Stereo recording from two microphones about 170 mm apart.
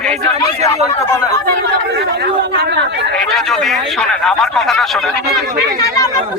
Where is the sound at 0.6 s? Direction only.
20° left (ahead or behind).